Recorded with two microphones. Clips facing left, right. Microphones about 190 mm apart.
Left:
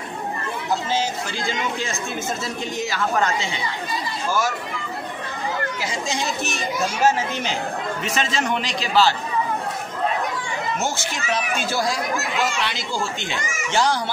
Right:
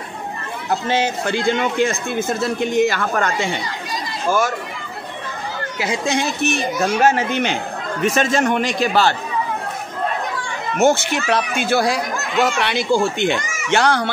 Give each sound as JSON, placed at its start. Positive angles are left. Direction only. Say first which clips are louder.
{"t": 0.8, "sound": "a man's voice", "louder": "right 5 dB", "side_deg": -65}
{"t": 5.8, "sound": "speech", "louder": "right 6 dB", "side_deg": -65}
{"t": 8.0, "sound": "a man's voice", "louder": "right 9 dB", "side_deg": -50}
{"t": 10.8, "sound": "speech", "louder": "right 10 dB", "side_deg": -65}